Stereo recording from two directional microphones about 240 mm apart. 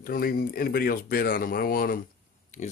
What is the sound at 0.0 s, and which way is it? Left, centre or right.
Speech, left.